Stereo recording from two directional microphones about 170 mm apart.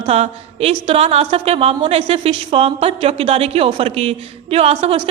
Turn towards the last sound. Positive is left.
turn(degrees=-35)  # may be behind; listen again after turning